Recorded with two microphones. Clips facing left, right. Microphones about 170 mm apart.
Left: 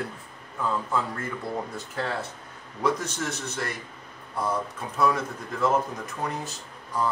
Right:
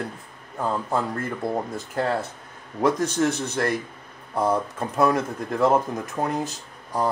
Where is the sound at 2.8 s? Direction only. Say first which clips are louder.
Right 6 dB; 55° right (ahead or behind).